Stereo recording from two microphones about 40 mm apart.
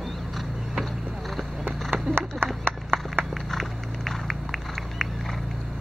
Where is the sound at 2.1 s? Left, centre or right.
Right.